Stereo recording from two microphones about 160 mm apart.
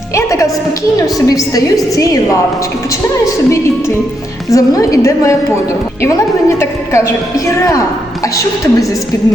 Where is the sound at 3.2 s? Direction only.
20° left (ahead or behind).